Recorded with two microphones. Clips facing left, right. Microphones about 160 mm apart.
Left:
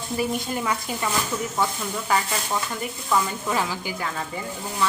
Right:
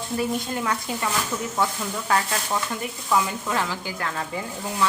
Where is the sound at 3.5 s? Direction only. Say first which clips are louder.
Left 2 dB; 10° left (ahead or behind).